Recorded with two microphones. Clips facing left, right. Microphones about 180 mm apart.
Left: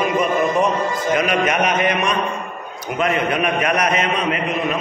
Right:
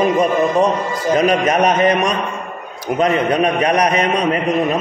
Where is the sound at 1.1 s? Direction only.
40° right (ahead or behind).